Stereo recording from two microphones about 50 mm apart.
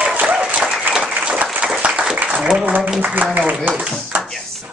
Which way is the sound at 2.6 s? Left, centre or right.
Right.